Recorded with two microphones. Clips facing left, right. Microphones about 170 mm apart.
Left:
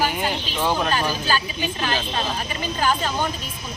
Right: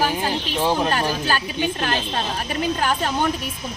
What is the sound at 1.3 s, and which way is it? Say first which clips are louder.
A woman's voice: right 2 dB; 55° right (ahead or behind).